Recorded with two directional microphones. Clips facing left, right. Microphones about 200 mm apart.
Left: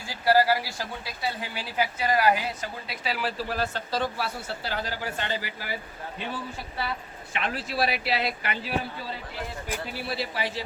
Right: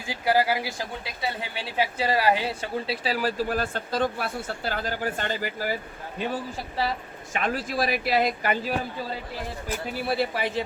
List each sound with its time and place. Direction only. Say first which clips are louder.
0.1 s speech: left 1 dB; 20° right (ahead or behind); by 5.7 s 45° right (ahead or behind)
7.3 s speech: right 2 dB; 45° right (ahead or behind)
9.9 s speech: right 9 dB; 55° right (ahead or behind)